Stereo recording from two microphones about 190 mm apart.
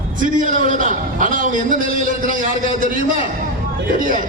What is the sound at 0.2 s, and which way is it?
A man's voice, 45° right (ahead or behind).